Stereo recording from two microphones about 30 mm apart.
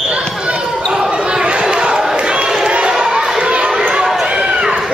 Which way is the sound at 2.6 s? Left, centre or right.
Right.